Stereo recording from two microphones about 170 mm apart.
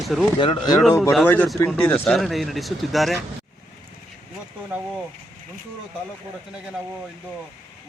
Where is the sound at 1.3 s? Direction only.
5° left (ahead or behind).